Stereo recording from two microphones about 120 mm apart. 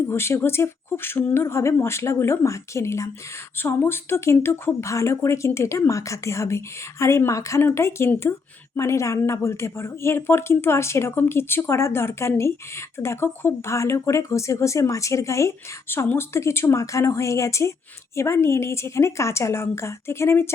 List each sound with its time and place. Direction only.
0.1 s speech: 20° left (ahead or behind)